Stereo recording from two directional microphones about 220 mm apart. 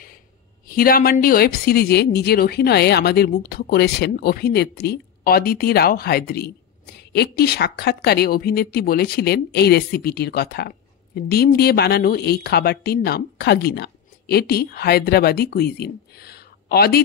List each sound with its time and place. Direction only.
0.7 s a woman's voice: 40° left (ahead or behind)